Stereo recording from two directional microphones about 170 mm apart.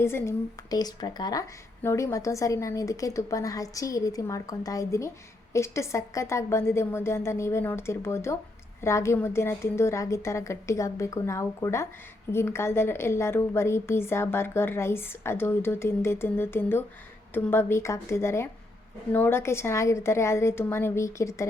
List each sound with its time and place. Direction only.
0.0 s a woman's voice: 15° left (ahead or behind)